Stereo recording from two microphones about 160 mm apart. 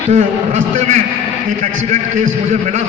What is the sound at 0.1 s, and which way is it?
Speech, 45° right (ahead or behind).